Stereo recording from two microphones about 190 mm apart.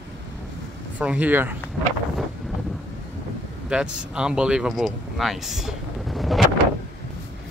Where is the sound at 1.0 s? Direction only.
5° right (ahead or behind).